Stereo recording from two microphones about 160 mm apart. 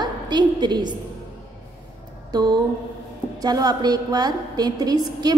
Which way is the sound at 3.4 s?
25° right (ahead or behind).